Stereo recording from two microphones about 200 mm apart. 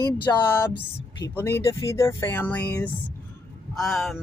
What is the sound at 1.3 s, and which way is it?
Speech, 15° left (ahead or behind).